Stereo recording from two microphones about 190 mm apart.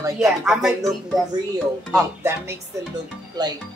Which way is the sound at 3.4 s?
25° right (ahead or behind).